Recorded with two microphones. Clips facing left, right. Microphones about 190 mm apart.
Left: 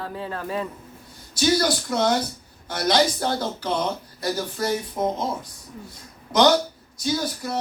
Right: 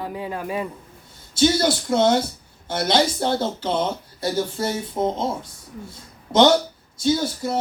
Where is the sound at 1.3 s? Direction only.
25° right (ahead or behind).